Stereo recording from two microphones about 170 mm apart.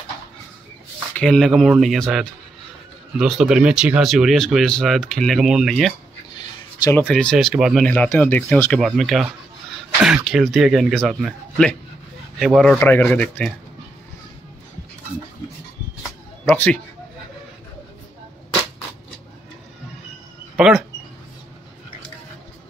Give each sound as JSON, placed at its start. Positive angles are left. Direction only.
{"t": 1.1, "sound": "speech", "side_deg": 5}
{"t": 7.0, "sound": "speech", "side_deg": 5}
{"t": 8.7, "sound": "speech", "side_deg": 0}
{"t": 16.4, "sound": "speech", "side_deg": 10}
{"t": 20.5, "sound": "speech", "side_deg": -5}